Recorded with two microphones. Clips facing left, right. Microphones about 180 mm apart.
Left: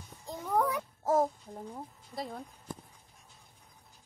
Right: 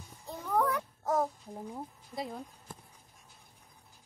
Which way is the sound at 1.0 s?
35° left (ahead or behind).